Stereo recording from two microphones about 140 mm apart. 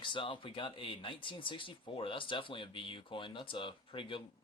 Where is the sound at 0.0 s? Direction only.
35° left (ahead or behind).